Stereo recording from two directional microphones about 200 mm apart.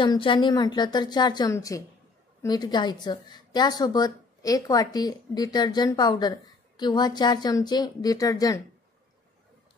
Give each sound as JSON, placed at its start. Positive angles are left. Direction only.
{"t": 0.0, "sound": "a woman's voice", "side_deg": 25}